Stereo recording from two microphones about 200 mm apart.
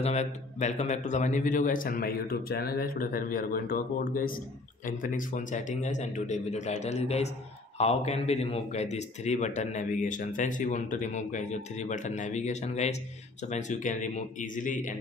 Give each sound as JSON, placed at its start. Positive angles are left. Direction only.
{"t": 0.0, "sound": "a man's voice", "side_deg": 35}